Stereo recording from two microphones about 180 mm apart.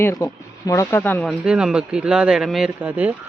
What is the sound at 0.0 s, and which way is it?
Speech, 15° left (ahead or behind).